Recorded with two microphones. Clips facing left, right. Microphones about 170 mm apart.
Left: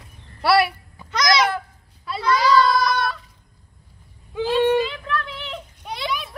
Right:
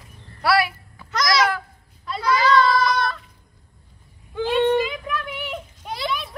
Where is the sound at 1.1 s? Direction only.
Centre (ahead or behind).